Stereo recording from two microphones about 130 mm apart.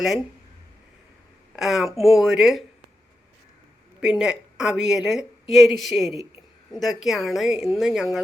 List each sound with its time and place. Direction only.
1.5 s a woman's voice: centre (ahead or behind)
4.0 s a woman's voice: 5° right (ahead or behind)